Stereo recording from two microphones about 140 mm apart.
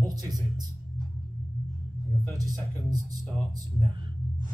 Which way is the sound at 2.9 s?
25° right (ahead or behind).